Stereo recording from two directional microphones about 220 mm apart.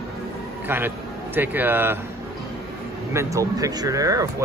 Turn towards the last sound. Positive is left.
turn(degrees=-15)  # may be behind; listen again after turning